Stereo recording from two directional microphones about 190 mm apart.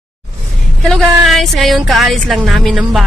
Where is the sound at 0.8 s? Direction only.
Centre (ahead or behind).